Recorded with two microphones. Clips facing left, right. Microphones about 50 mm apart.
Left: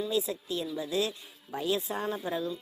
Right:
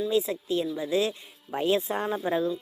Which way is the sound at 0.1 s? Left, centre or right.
Right.